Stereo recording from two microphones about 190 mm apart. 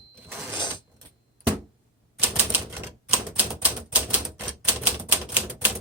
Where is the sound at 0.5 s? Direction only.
25° left (ahead or behind).